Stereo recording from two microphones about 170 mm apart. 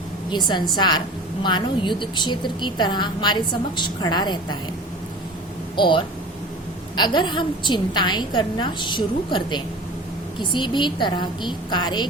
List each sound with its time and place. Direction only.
0.3 s a woman's voice: 25° left (ahead or behind)
5.7 s a woman's voice: 30° left (ahead or behind)